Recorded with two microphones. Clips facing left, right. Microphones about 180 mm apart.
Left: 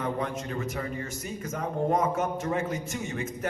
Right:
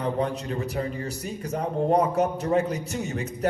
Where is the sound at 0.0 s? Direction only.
35° right (ahead or behind).